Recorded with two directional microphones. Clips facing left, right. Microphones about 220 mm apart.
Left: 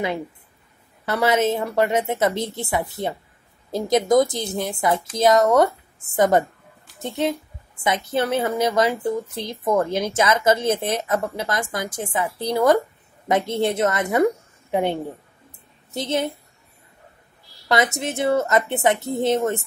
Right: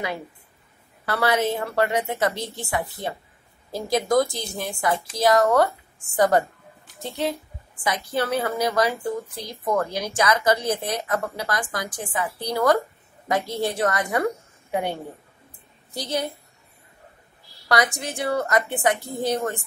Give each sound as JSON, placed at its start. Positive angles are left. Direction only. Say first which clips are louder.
{"t": 1.0, "sound": "a woman's voice", "louder": "left 3 dB", "side_deg": 20}
{"t": 17.6, "sound": "a woman's voice", "louder": "left 2 dB", "side_deg": 25}